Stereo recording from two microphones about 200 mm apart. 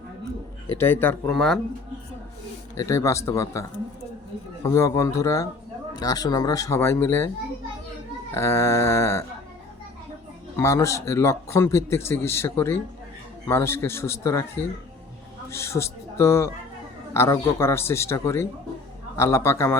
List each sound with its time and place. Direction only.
0.7 s speech: 10° left (ahead or behind)
2.7 s speech: 15° left (ahead or behind)
8.3 s speech: 15° left (ahead or behind)
10.6 s speech: 15° left (ahead or behind)
15.4 s speech: 15° left (ahead or behind)